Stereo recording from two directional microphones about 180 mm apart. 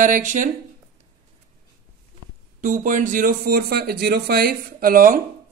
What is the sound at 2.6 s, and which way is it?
Speech, 45° right (ahead or behind).